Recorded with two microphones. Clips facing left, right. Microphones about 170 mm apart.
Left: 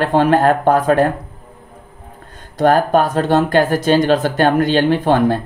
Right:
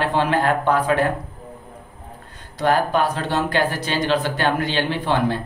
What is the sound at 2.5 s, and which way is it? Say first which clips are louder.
Speech: left 6 dB; 50° left (ahead or behind).